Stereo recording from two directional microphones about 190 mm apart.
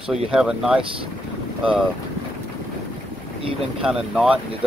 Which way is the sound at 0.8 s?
30° right (ahead or behind).